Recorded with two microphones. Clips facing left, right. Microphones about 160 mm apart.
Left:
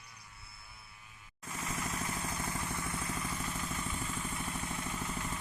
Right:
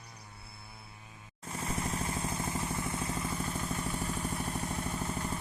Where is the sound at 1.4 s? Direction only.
30° right (ahead or behind).